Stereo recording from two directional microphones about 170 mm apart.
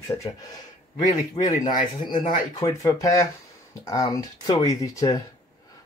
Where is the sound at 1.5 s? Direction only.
45° left (ahead or behind).